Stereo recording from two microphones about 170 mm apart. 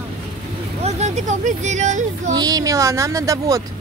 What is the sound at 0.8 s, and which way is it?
Speech, 40° right (ahead or behind).